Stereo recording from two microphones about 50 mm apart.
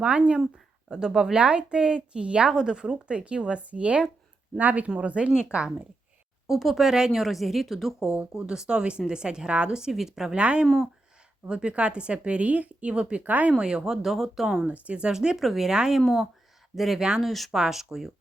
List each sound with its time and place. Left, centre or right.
0.0 s a woman's voice: right
0.9 s a woman's voice: centre
6.5 s speech: centre
8.3 s speech: centre
9.9 s speech: centre
10.3 s a woman's voice: right
13.6 s speech: centre
14.7 s speech: right
15.4 s speech: centre
16.0 s speech: centre
17.5 s speech: centre